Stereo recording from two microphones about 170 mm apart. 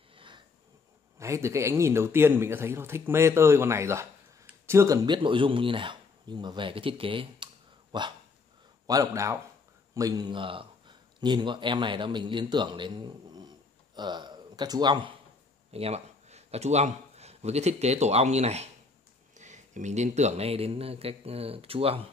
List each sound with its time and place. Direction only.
0.1 s snort: 30° right (ahead or behind)
1.1 s a man's voice: 15° right (ahead or behind); by 22.0 s 35° right (ahead or behind)